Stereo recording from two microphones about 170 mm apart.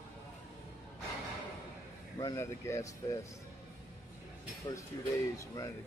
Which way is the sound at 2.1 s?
20° left (ahead or behind).